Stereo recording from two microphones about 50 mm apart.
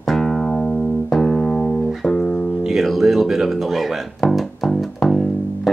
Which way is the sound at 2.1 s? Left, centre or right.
Left.